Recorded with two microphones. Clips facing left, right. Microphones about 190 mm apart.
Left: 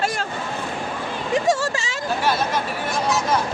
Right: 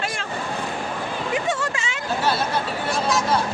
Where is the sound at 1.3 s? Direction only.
40° left (ahead or behind).